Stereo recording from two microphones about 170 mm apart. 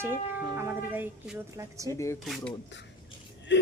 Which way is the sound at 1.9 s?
15° left (ahead or behind).